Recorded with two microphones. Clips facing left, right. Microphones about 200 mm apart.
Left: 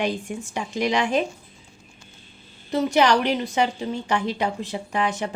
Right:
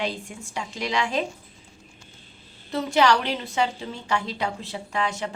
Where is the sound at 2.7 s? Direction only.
20° left (ahead or behind).